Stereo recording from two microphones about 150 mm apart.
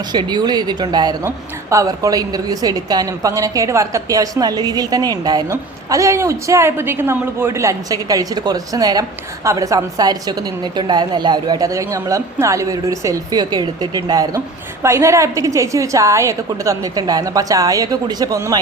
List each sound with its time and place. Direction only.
0.1 s a woman's voice: 30° right (ahead or behind)